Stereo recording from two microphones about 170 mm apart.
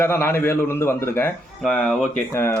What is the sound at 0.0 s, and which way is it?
Speech, 15° left (ahead or behind).